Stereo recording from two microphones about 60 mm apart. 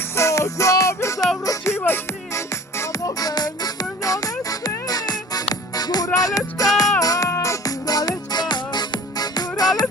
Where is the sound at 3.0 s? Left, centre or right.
Left.